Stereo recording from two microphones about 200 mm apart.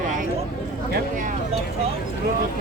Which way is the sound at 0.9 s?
40° right (ahead or behind).